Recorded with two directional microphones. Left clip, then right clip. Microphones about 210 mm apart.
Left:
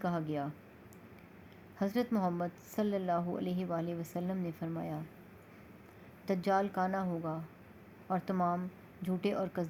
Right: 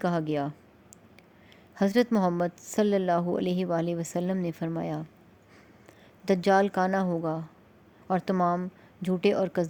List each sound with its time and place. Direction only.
0.0 s a woman's voice: 50° right (ahead or behind)
1.7 s a woman's voice: 50° right (ahead or behind)
6.2 s a woman's voice: 50° right (ahead or behind)